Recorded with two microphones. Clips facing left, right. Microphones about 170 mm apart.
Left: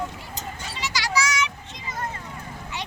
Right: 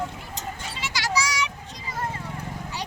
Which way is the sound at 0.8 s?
50° right (ahead or behind).